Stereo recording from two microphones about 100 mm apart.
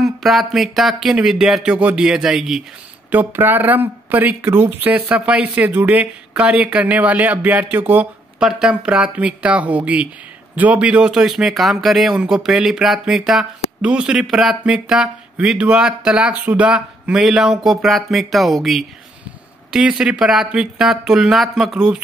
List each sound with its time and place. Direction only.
0.0 s speech: centre (ahead or behind)
3.1 s speech: 20° right (ahead or behind)